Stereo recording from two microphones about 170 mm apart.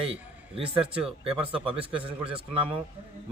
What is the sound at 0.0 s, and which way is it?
Speech, 35° right (ahead or behind).